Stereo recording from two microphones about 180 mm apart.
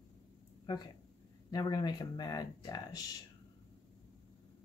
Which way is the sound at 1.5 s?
20° left (ahead or behind).